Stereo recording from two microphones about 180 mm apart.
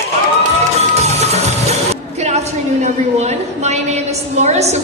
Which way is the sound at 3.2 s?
40° right (ahead or behind).